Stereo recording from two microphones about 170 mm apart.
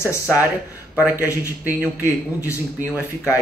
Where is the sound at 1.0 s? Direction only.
10° right (ahead or behind).